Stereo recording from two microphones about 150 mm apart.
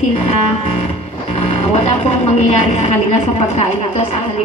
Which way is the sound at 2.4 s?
45° left (ahead or behind).